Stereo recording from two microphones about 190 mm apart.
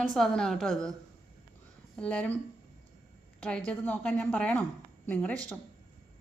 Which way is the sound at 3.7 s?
5° left (ahead or behind).